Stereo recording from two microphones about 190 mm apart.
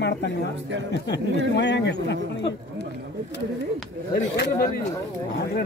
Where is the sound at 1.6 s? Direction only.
65° left (ahead or behind).